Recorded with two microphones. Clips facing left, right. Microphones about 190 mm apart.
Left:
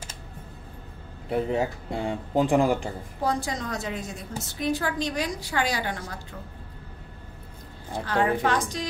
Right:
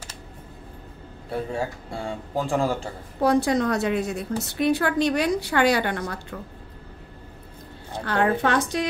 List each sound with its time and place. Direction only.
1.3 s speech: 20° left (ahead or behind)
3.2 s a woman's voice: 65° right (ahead or behind)
8.0 s a woman's voice: 65° right (ahead or behind)